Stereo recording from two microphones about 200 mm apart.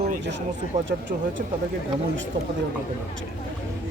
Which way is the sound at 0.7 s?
35° right (ahead or behind).